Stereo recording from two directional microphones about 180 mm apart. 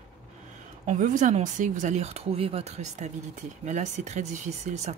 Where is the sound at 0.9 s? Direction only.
45° right (ahead or behind).